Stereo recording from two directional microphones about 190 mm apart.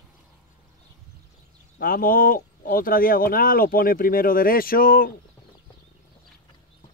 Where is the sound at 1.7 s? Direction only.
50° left (ahead or behind).